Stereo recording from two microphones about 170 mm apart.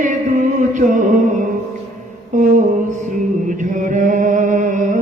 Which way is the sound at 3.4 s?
50° right (ahead or behind).